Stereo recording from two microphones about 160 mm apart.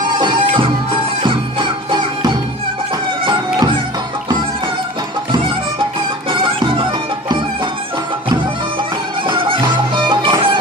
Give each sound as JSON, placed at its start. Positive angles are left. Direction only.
{"t": 0.2, "sound": "music", "side_deg": -30}
{"t": 6.4, "sound": "music", "side_deg": -30}
{"t": 9.2, "sound": "music", "side_deg": -30}